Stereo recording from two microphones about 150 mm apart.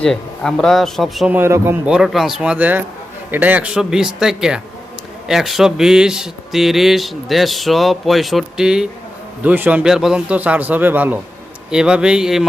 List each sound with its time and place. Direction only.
0.0 s speech: 5° left (ahead or behind)
1.3 s a man's voice: 15° right (ahead or behind)
1.9 s a man's voice: 5° right (ahead or behind)